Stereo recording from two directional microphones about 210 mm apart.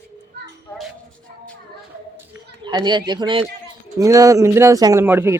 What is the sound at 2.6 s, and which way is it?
Speech, 20° right (ahead or behind).